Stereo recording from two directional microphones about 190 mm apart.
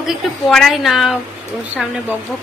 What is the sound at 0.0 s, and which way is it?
A woman's voice, centre (ahead or behind).